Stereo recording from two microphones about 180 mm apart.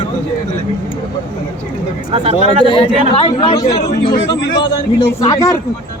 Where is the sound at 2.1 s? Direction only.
35° right (ahead or behind).